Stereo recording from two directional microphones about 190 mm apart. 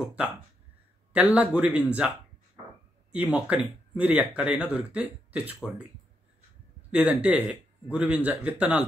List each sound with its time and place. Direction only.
0.0 s a man's voice: 5° right (ahead or behind)
6.9 s a man's voice: 5° right (ahead or behind)